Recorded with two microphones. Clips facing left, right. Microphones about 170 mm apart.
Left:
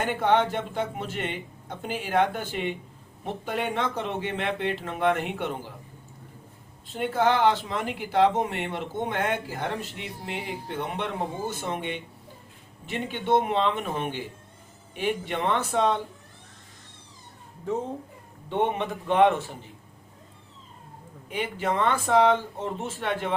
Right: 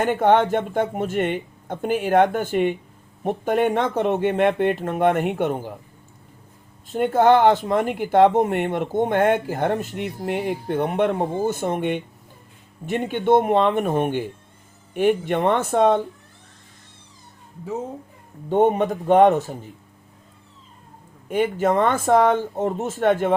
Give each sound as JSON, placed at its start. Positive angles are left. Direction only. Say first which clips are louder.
{"t": 0.0, "sound": "speech", "louder": "right 6 dB", "side_deg": -50}
{"t": 6.9, "sound": "speech", "louder": "right 8 dB", "side_deg": -50}
{"t": 18.4, "sound": "speech", "louder": "right 8 dB", "side_deg": -40}
{"t": 21.2, "sound": "speech", "louder": "right 8 dB", "side_deg": -50}